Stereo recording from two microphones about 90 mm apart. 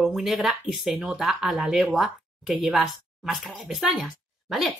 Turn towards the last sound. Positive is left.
turn(degrees=0)  # may be behind; listen again after turning